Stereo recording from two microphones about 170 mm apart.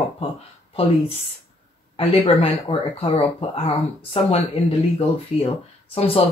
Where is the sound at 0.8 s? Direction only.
35° left (ahead or behind).